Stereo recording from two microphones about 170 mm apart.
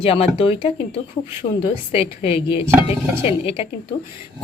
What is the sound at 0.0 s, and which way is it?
A woman's voice, 35° left (ahead or behind).